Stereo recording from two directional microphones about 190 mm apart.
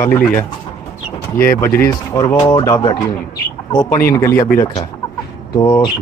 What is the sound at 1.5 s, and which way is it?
Speech, 15° left (ahead or behind).